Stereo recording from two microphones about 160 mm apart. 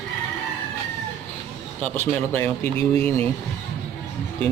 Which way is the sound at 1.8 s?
10° left (ahead or behind).